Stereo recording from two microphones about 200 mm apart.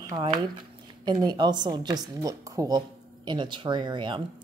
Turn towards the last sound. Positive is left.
turn(degrees=-25)  # may be behind; listen again after turning